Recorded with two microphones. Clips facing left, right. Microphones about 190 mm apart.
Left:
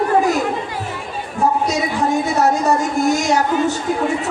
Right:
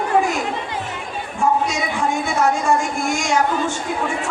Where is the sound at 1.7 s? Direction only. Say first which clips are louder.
Left 4 dB; 40° left (ahead or behind).